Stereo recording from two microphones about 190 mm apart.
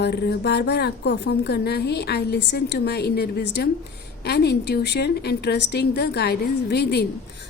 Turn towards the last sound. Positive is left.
turn(degrees=60)  # may be behind; listen again after turning